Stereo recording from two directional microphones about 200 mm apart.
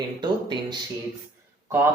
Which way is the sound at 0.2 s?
20° right (ahead or behind).